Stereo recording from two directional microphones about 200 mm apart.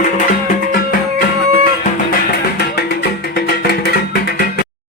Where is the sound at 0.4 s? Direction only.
45° left (ahead or behind).